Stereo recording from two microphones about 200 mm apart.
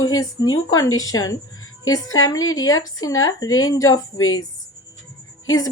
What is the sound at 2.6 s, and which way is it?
Speech, 90° left.